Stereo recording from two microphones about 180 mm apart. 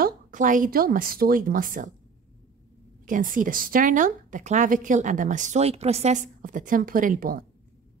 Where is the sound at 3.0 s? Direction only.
50° right (ahead or behind).